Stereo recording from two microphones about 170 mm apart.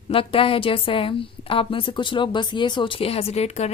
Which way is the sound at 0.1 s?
30° left (ahead or behind).